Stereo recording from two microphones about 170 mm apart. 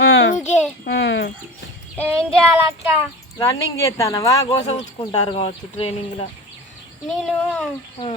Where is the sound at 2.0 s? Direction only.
Centre (ahead or behind).